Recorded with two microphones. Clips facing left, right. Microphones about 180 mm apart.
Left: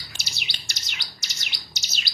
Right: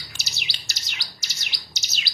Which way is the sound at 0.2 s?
5° right (ahead or behind).